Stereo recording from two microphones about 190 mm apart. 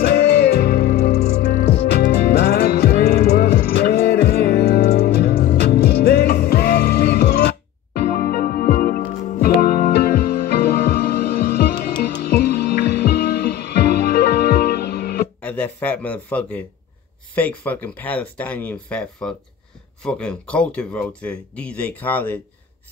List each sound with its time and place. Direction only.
0.0 s music: 60° left (ahead or behind)
15.4 s a sound: 10° left (ahead or behind)
17.4 s speech: 10° left (ahead or behind)